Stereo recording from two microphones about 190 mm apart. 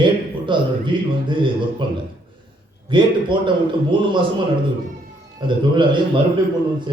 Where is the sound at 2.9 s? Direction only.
25° right (ahead or behind).